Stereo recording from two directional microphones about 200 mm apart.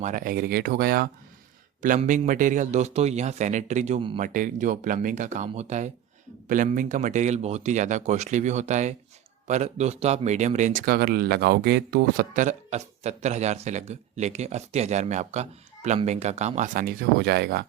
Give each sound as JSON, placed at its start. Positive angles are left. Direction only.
{"t": 0.0, "sound": "speech", "side_deg": -40}
{"t": 4.2, "sound": "speech", "side_deg": -40}